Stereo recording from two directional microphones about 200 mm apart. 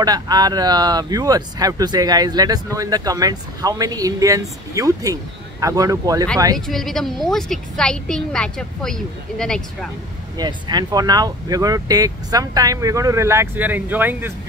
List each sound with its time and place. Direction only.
0.0 s speech: 20° right (ahead or behind)
6.7 s a woman's voice: centre (ahead or behind)
10.3 s speech: 20° right (ahead or behind)